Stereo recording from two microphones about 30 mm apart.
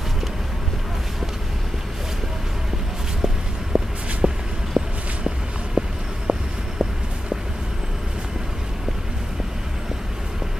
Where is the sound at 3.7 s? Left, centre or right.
Right.